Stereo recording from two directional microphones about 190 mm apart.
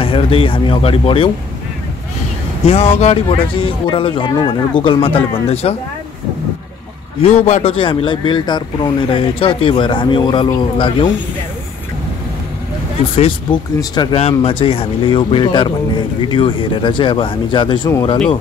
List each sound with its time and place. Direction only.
0.0 s speech: 30° left (ahead or behind)
2.6 s speech: 30° left (ahead or behind)
7.2 s speech: 35° left (ahead or behind)
13.2 s speech: 25° left (ahead or behind)